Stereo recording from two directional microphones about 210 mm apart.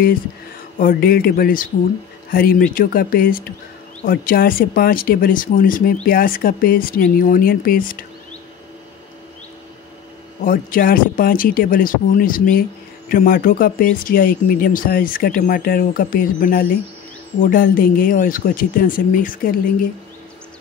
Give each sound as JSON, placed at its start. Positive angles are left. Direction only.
{"t": 0.7, "sound": "speech", "side_deg": 45}
{"t": 10.4, "sound": "speech", "side_deg": 40}